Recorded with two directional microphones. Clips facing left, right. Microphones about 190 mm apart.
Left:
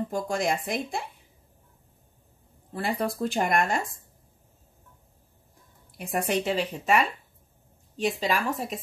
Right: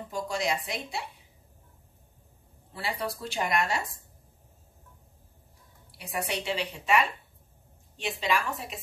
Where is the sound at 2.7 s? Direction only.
50° left (ahead or behind).